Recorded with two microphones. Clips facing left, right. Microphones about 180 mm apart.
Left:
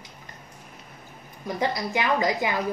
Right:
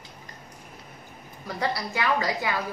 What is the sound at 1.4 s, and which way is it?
A woman's voice, 20° left (ahead or behind).